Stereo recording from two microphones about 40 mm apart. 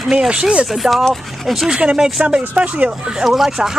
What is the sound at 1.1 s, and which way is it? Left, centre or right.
Speech, centre.